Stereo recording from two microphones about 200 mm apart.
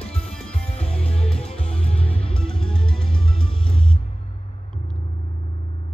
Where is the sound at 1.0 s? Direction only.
30° left (ahead or behind).